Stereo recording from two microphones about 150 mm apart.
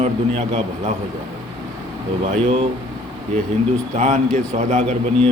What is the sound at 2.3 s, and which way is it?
Speech, 45° right (ahead or behind).